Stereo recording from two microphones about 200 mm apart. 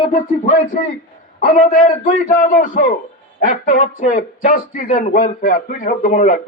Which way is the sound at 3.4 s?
40° left (ahead or behind).